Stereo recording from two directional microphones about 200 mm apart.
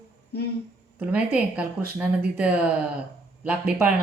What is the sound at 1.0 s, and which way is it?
Speech, 5° right (ahead or behind).